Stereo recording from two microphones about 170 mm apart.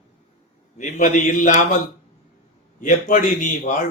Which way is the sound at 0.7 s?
45° left (ahead or behind).